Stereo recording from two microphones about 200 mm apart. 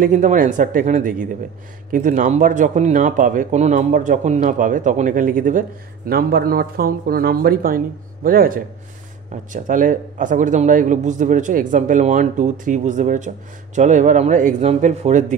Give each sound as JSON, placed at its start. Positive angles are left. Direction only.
{"t": 0.0, "sound": "a man's voice", "side_deg": -40}